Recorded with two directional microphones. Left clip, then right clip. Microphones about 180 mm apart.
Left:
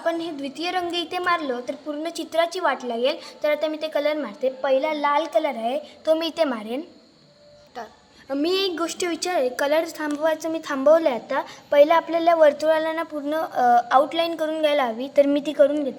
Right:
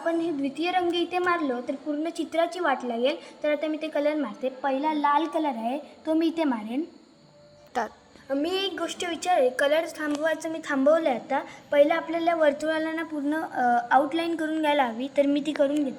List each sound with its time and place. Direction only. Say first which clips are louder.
0.0 s a woman's voice: left 1 dB; 35° left (ahead or behind)
6.1 s a woman's voice: left 4 dB; 35° left (ahead or behind)
7.8 s a woman's voice: right 7 dB; 45° right (ahead or behind)
8.3 s a woman's voice: left 4 dB; 30° left (ahead or behind); by 15.9 s 70° left (ahead or behind)